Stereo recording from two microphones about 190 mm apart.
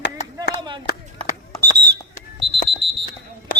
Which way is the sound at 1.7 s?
60° right (ahead or behind).